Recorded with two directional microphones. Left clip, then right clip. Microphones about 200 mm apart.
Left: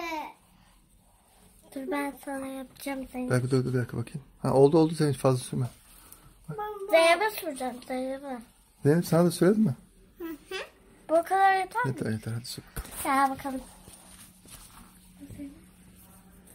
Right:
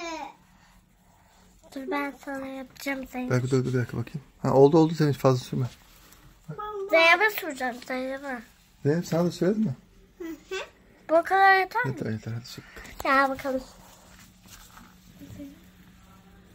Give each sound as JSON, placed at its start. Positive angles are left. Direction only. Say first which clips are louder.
{"t": 1.7, "sound": "speech", "louder": "right 2 dB", "side_deg": 0}
{"t": 6.9, "sound": "speech", "louder": "right 2 dB", "side_deg": -10}
{"t": 8.8, "sound": "speech", "louder": "left 2 dB", "side_deg": 20}
{"t": 11.1, "sound": "speech", "louder": "right 3 dB", "side_deg": 0}
{"t": 11.4, "sound": "speech", "louder": "right 4 dB", "side_deg": -15}
{"t": 11.9, "sound": "speech", "louder": "even", "side_deg": 5}
{"t": 13.0, "sound": "speech", "louder": "right 3 dB", "side_deg": -50}